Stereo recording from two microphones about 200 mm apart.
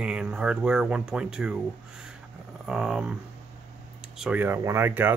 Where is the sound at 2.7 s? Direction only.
5° right (ahead or behind).